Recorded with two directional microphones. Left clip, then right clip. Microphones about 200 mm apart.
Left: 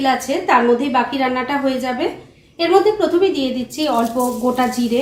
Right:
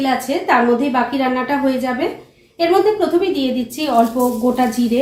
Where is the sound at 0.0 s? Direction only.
10° left (ahead or behind).